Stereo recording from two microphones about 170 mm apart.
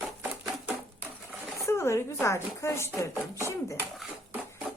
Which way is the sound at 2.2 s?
15° left (ahead or behind).